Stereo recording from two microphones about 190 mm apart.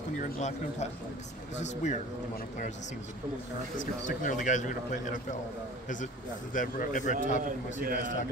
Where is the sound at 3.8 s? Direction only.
45° left (ahead or behind).